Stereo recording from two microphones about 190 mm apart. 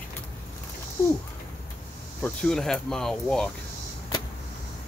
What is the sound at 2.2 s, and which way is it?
Speech, 5° left (ahead or behind).